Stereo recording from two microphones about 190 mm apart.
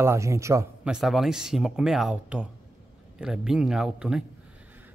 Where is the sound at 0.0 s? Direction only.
15° right (ahead or behind).